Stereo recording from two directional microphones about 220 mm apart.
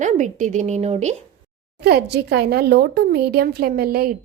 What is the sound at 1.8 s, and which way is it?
Speech, 45° right (ahead or behind).